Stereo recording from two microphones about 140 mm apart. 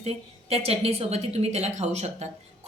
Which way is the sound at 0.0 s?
45° right (ahead or behind).